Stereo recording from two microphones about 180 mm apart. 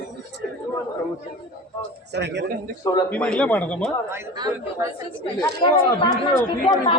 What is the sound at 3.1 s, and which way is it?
Speech, 5° left (ahead or behind).